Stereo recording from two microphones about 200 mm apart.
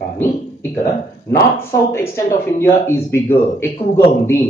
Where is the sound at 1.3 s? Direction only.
15° left (ahead or behind).